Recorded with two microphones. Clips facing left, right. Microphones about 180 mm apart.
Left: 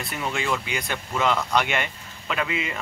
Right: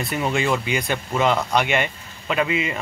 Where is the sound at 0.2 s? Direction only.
15° right (ahead or behind).